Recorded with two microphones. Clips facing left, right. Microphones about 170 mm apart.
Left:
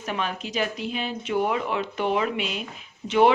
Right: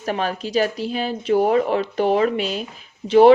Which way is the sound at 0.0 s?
35° right (ahead or behind).